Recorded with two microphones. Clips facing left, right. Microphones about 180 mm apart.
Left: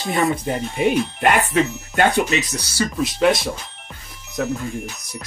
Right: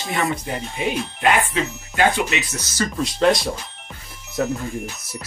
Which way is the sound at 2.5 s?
10° left (ahead or behind).